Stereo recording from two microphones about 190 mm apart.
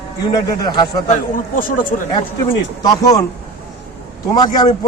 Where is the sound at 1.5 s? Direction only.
45° left (ahead or behind).